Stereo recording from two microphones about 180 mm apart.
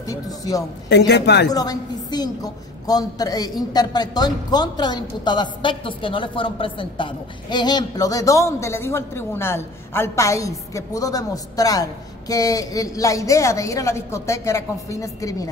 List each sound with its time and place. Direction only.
0.0 s a woman's voice: 20° left (ahead or behind)
0.8 s speech: 70° left (ahead or behind)
1.5 s a woman's voice: 20° left (ahead or behind)